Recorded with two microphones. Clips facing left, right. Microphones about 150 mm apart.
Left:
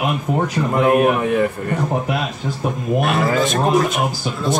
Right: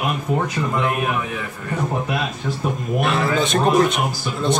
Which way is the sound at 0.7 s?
60° left (ahead or behind).